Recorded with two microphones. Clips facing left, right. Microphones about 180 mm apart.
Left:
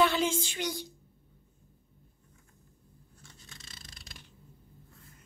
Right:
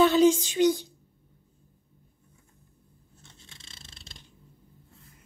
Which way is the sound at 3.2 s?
25° right (ahead or behind).